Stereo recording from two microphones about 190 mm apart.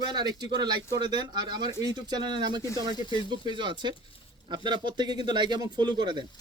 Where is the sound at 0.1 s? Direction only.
20° right (ahead or behind).